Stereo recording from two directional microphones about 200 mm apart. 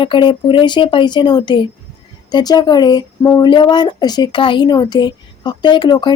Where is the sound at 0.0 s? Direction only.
25° left (ahead or behind).